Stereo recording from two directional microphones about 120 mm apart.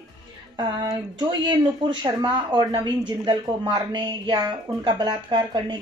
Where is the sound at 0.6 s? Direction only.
40° right (ahead or behind).